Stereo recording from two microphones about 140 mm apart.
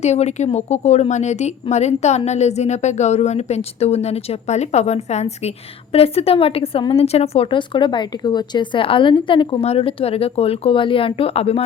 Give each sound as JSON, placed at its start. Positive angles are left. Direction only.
{"t": 0.0, "sound": "a woman's voice", "side_deg": 55}